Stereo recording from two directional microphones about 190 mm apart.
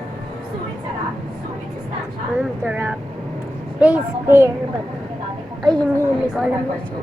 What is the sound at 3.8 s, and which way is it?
Speech, 10° right (ahead or behind).